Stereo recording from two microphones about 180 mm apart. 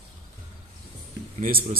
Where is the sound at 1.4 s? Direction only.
55° right (ahead or behind).